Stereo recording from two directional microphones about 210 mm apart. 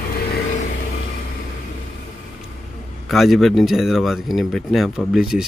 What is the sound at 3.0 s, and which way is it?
Speech, centre (ahead or behind).